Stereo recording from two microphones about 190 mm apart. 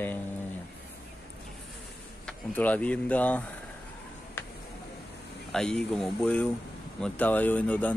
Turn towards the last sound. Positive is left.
turn(degrees=10)  # may be behind; listen again after turning